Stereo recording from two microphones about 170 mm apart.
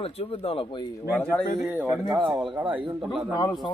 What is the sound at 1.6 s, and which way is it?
Speech, 5° right (ahead or behind).